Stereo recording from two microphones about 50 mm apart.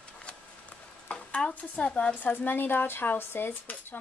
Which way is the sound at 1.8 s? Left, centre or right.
Left.